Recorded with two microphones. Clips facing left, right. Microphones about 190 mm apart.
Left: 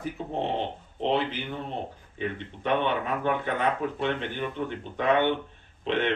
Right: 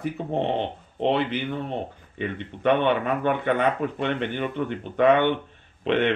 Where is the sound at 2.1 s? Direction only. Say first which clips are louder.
Right 2 dB; 65° right (ahead or behind).